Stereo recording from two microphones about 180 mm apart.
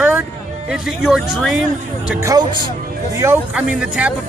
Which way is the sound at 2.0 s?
15° right (ahead or behind).